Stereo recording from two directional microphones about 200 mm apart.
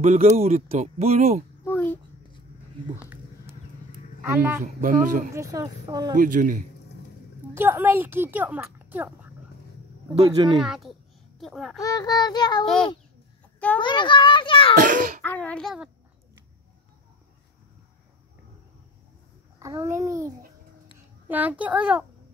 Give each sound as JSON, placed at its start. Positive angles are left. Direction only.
{"t": 0.0, "sound": "speech", "side_deg": -35}
{"t": 1.6, "sound": "a sound", "side_deg": 10}
{"t": 4.2, "sound": "speech", "side_deg": -15}
{"t": 4.8, "sound": "speech", "side_deg": -40}
{"t": 5.3, "sound": "speech", "side_deg": -15}
{"t": 6.1, "sound": "speech", "side_deg": -40}
{"t": 7.5, "sound": "speech", "side_deg": -10}
{"t": 10.1, "sound": "speech", "side_deg": -20}
{"t": 10.6, "sound": "a child's voice", "side_deg": 0}
{"t": 11.8, "sound": "a child's voice", "side_deg": 20}
{"t": 13.7, "sound": "a child's voice", "side_deg": 25}
{"t": 14.8, "sound": "a child's voice", "side_deg": -45}
{"t": 15.2, "sound": "speech", "side_deg": 5}
{"t": 19.6, "sound": "speech", "side_deg": -15}